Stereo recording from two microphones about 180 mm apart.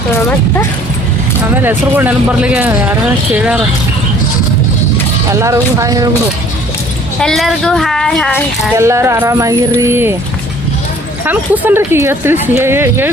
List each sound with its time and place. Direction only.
1.5 s speech: 10° right (ahead or behind)
5.3 s speech: 15° right (ahead or behind)
7.2 s speech: centre (ahead or behind)
8.8 s speech: 15° right (ahead or behind)
11.3 s speech: 10° right (ahead or behind)